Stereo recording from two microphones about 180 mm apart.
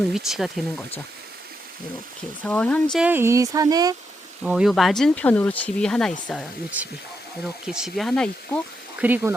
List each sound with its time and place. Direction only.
0.1 s speech: centre (ahead or behind)
2.4 s speech: 10° left (ahead or behind)
3.0 s speech: 10° right (ahead or behind)
4.4 s speech: 5° right (ahead or behind)
9.0 s speech: 10° right (ahead or behind)